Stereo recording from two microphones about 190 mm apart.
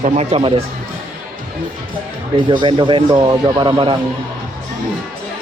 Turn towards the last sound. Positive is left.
turn(degrees=-25)  # may be behind; listen again after turning